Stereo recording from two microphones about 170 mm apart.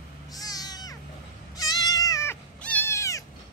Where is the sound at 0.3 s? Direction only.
20° left (ahead or behind).